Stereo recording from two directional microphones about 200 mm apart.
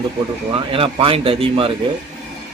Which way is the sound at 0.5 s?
30° right (ahead or behind).